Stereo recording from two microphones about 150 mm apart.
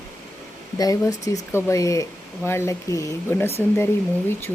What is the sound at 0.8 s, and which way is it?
Speech, 25° left (ahead or behind).